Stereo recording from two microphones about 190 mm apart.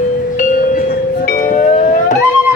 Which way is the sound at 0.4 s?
45° left (ahead or behind).